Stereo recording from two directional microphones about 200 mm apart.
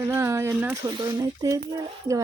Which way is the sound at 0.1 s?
15° right (ahead or behind).